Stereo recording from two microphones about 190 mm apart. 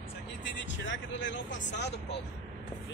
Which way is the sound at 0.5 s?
70° left (ahead or behind).